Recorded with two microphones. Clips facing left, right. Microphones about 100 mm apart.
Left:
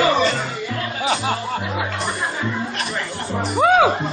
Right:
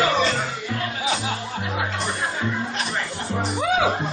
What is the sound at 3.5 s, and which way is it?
Music, 65° left (ahead or behind).